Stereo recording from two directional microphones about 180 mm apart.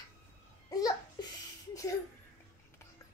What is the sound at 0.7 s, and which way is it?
Babbling, 20° left (ahead or behind).